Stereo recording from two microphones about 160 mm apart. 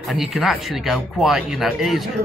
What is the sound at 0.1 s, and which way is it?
Speech, centre (ahead or behind).